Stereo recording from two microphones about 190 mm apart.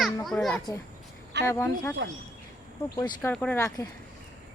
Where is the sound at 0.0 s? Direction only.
Centre (ahead or behind).